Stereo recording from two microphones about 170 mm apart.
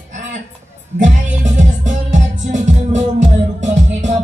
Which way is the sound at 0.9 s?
45° right (ahead or behind).